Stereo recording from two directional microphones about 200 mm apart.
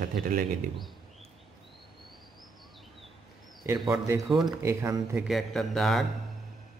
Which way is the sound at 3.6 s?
10° right (ahead or behind).